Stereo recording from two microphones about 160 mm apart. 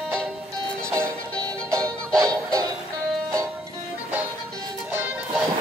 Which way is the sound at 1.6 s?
20° right (ahead or behind).